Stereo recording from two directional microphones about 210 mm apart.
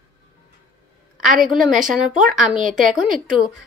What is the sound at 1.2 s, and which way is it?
A woman's voice, centre (ahead or behind).